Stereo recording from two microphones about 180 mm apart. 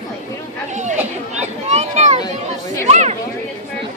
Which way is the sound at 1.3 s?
35° right (ahead or behind).